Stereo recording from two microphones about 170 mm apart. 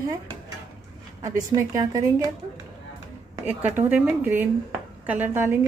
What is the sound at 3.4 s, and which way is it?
A woman's voice, 10° right (ahead or behind).